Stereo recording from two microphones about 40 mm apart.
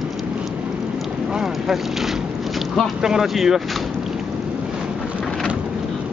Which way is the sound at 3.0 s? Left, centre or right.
Centre.